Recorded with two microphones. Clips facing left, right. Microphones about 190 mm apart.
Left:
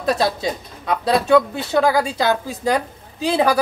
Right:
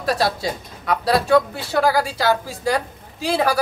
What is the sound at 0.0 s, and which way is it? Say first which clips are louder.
Speech: left 2 dB; 20° left (ahead or behind).